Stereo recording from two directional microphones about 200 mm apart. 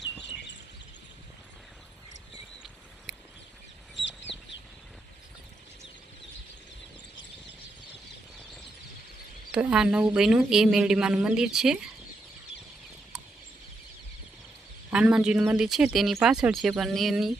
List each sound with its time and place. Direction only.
3.1 s a sound: centre (ahead or behind)
4.0 s chicken: 65° left (ahead or behind)
9.5 s speech: 5° right (ahead or behind)
14.8 s speech: 5° right (ahead or behind)